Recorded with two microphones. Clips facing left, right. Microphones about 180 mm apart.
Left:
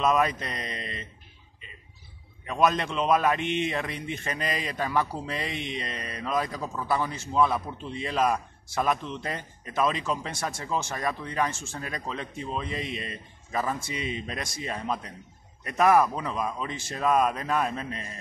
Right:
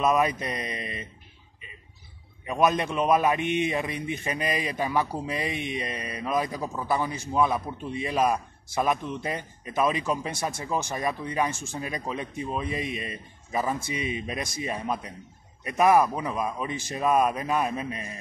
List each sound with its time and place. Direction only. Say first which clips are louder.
0.0 s a man's voice: right 1 dB; 15° right (ahead or behind)
2.4 s a man's voice: right 1 dB; 15° right (ahead or behind)